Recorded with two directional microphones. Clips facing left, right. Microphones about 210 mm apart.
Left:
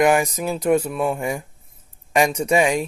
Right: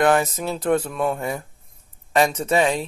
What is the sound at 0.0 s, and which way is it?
Speech, 10° left (ahead or behind).